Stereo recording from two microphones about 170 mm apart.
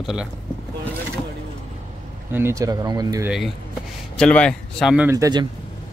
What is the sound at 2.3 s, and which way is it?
Speech, 15° right (ahead or behind).